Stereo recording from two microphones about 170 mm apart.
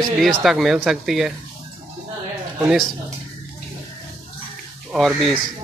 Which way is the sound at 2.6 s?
5° right (ahead or behind).